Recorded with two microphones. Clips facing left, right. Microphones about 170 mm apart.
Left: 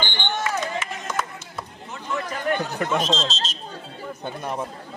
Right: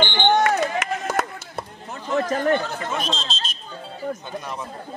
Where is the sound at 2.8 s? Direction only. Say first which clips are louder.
Left 4 dB; 75° left (ahead or behind).